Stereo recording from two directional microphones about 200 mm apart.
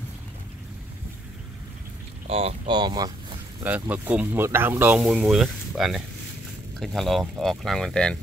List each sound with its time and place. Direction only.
2.2 s speech: 30° right (ahead or behind)
3.6 s speech: 10° right (ahead or behind)